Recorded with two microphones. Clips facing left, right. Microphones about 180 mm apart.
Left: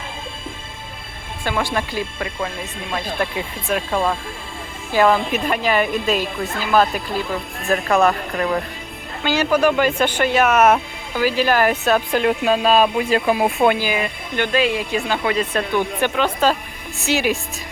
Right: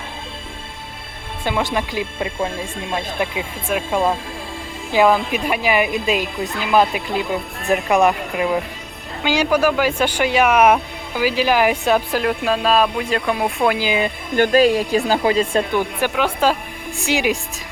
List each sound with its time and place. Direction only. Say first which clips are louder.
1.5 s speech: right 1 dB; 20° right (ahead or behind)
3.3 s speech: even; 10° right (ahead or behind)
13.7 s speech: right 2 dB; 20° right (ahead or behind)
14.3 s speech: right 5 dB; 40° right (ahead or behind)
15.7 s speech: even; 10° right (ahead or behind)